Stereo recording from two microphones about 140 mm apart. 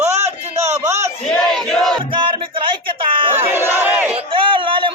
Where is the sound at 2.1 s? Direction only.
40° right (ahead or behind).